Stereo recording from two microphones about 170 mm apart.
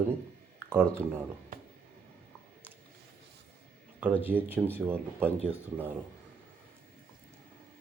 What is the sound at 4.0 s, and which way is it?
Speech, 10° right (ahead or behind).